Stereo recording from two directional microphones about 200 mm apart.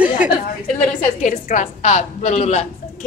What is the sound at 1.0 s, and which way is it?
A woman's voice, 40° left (ahead or behind).